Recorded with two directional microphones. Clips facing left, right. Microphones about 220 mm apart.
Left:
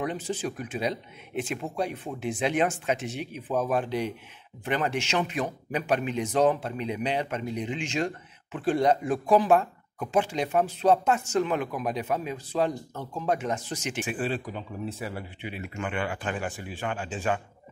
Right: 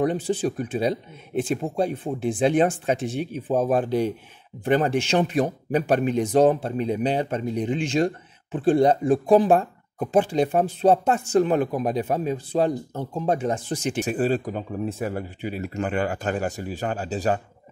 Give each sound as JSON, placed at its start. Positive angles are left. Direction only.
{"t": 0.0, "sound": "speech", "side_deg": -35}